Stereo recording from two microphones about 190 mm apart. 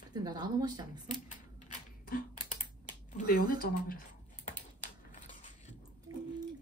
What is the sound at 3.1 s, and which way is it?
Speech, 50° left (ahead or behind).